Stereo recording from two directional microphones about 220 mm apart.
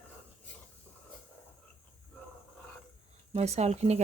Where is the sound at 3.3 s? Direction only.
30° right (ahead or behind).